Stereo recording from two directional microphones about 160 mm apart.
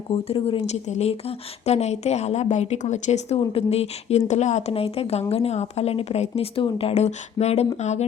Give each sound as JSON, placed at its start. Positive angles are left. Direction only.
{"t": 0.1, "sound": "speech", "side_deg": 35}